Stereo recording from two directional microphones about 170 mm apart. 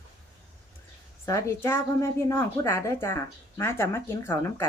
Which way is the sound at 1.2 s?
15° left (ahead or behind).